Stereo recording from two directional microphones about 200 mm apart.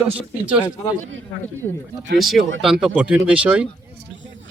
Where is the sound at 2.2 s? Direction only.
Centre (ahead or behind).